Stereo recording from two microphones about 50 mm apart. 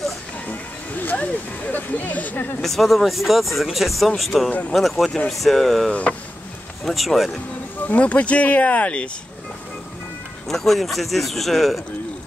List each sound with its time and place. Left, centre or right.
0.5 s speech: left
2.6 s a man's voice: centre
4.5 s speech: left
4.7 s a man's voice: centre
5.9 s speech: left
6.8 s a man's voice: centre
7.8 s speech: left
10.5 s a man's voice: centre